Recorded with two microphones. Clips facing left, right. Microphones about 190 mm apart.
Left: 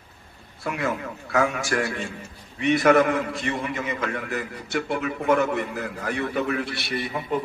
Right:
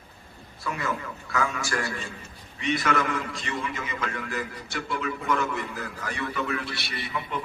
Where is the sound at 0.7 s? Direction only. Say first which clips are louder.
Left 4 dB; 60° left (ahead or behind).